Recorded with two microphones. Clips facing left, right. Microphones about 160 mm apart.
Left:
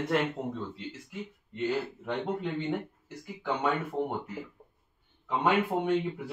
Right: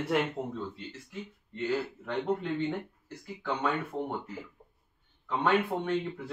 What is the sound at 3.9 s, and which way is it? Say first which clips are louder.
Speech: left 3 dB; 15° left (ahead or behind).